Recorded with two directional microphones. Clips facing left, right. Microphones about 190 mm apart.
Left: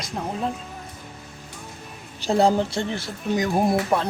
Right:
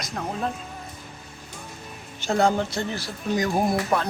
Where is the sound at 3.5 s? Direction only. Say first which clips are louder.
Left 3 dB; centre (ahead or behind).